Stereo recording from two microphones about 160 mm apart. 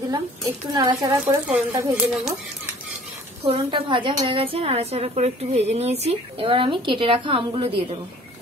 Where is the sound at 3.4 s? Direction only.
30° right (ahead or behind).